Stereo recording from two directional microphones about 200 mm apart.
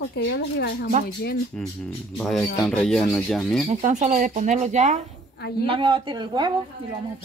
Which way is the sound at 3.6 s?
35° right (ahead or behind).